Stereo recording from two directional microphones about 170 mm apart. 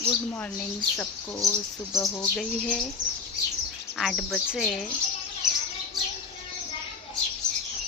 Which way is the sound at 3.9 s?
Centre (ahead or behind).